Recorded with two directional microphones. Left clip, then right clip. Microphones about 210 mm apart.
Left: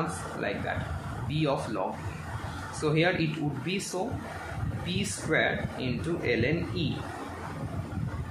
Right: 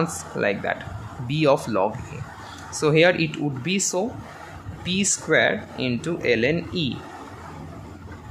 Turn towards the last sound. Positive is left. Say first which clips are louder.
# right 7 dB
turn(degrees=-50)  # may be behind; listen again after turning